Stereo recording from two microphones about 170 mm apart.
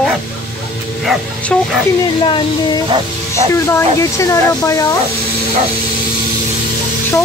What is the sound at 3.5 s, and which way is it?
Speech, 15° left (ahead or behind).